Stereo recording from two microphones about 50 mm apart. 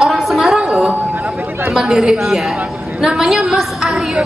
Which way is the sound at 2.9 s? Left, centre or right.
Centre.